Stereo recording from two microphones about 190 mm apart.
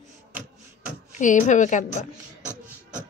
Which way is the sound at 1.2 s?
40° left (ahead or behind).